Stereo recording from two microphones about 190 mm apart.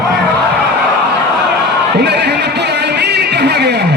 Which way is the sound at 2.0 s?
60° right (ahead or behind).